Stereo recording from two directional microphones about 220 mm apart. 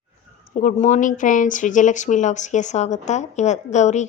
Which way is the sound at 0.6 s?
35° left (ahead or behind).